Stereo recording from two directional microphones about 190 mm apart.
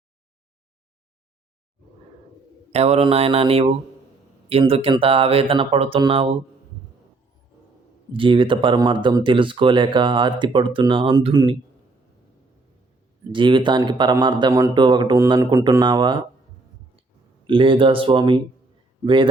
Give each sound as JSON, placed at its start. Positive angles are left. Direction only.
{"t": 2.7, "sound": "mantra", "side_deg": -35}
{"t": 4.7, "sound": "speech", "side_deg": -30}
{"t": 8.1, "sound": "speech", "side_deg": -25}
{"t": 13.3, "sound": "speech", "side_deg": -25}
{"t": 17.4, "sound": "speech", "side_deg": -25}